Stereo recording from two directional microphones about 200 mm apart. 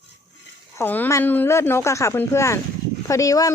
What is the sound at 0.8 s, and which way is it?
Speech, 10° left (ahead or behind).